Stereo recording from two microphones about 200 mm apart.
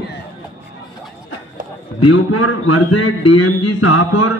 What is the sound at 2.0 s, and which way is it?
A man's voice, 90° left.